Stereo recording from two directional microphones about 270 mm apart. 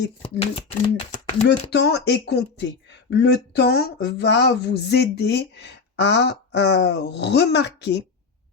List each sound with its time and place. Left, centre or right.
0.7 s speech: left
1.7 s speech: left